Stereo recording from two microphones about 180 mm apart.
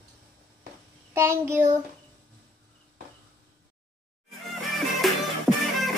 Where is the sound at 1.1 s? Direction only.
15° right (ahead or behind).